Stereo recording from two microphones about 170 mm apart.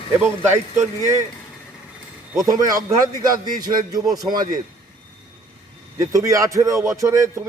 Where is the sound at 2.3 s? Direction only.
20° right (ahead or behind).